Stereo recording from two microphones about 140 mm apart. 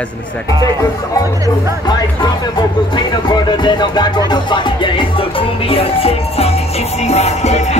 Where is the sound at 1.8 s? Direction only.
30° left (ahead or behind).